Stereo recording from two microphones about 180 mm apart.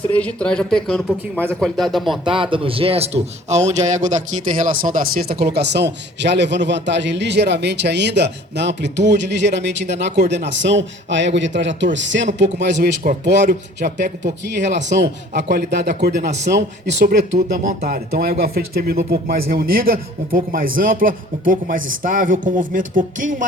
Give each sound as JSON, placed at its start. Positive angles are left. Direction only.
{"t": 0.1, "sound": "speech", "side_deg": 5}
{"t": 2.2, "sound": "a man's voice", "side_deg": -30}
{"t": 13.5, "sound": "a man's voice", "side_deg": -60}
{"t": 15.3, "sound": "a man's voice", "side_deg": -65}
{"t": 16.8, "sound": "a man's voice", "side_deg": -75}
{"t": 17.3, "sound": "speech", "side_deg": -45}